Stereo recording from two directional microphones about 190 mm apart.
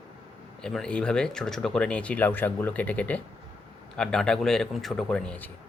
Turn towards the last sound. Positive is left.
turn(degrees=5)  # may be behind; listen again after turning